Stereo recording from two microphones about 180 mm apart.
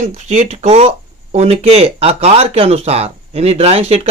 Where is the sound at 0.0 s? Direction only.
40° right (ahead or behind).